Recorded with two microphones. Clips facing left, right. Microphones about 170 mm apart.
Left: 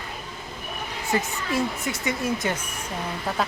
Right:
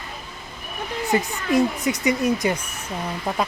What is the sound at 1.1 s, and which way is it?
A woman's voice, 20° right (ahead or behind).